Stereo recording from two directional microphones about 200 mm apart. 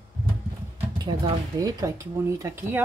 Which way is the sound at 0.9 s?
20° right (ahead or behind).